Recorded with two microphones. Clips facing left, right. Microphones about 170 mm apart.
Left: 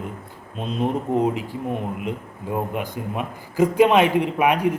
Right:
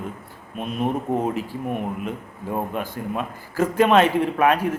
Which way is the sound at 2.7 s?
15° left (ahead or behind).